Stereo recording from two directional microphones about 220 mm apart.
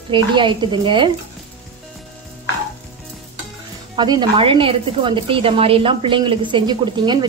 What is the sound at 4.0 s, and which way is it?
A woman's voice, 20° right (ahead or behind).